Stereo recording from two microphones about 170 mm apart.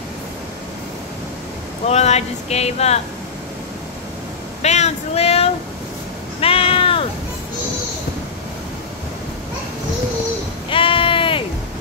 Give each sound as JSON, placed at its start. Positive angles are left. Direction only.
{"t": 1.9, "sound": "speech", "side_deg": 40}
{"t": 4.6, "sound": "a sound", "side_deg": 40}
{"t": 6.4, "sound": "cat", "side_deg": 35}
{"t": 10.7, "sound": "sheep", "side_deg": 30}